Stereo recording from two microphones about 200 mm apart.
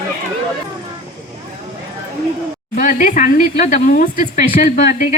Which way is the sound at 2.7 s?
40° left (ahead or behind).